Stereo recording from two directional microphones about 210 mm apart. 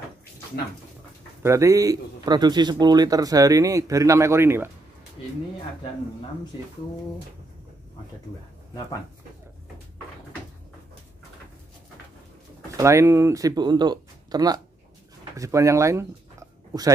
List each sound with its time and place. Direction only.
1.4 s a man's voice: 15° right (ahead or behind)
12.7 s speech: 15° right (ahead or behind)